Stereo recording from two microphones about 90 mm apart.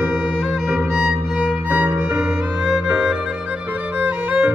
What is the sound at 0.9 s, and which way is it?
Violin, 10° right (ahead or behind).